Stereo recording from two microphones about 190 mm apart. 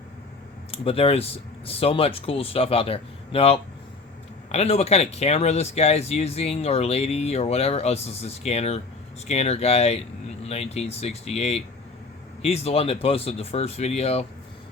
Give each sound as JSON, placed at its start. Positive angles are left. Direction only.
{"t": 0.7, "sound": "speech", "side_deg": 30}